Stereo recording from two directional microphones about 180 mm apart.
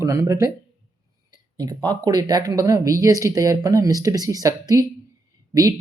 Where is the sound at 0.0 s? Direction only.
15° right (ahead or behind).